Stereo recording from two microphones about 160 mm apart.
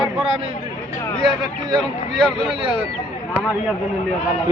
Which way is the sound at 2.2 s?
Centre (ahead or behind).